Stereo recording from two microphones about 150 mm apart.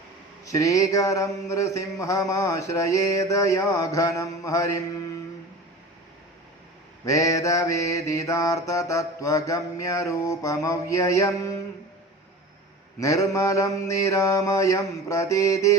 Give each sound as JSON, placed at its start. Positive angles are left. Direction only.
{"t": 0.4, "sound": "mantra", "side_deg": 20}
{"t": 7.0, "sound": "mantra", "side_deg": 20}
{"t": 13.0, "sound": "mantra", "side_deg": 20}